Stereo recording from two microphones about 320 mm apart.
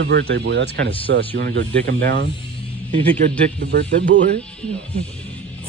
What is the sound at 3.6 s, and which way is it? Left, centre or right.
Speech, right.